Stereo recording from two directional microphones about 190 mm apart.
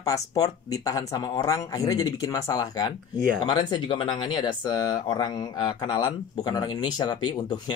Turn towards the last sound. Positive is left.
turn(degrees=25)  # may be behind; listen again after turning